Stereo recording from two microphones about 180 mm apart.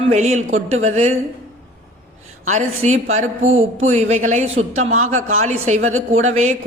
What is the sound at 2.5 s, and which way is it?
Speech, 40° right (ahead or behind).